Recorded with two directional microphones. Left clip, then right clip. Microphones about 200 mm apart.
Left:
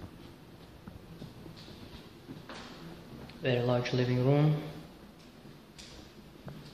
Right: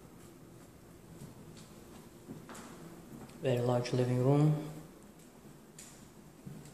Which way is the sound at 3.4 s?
15° right (ahead or behind).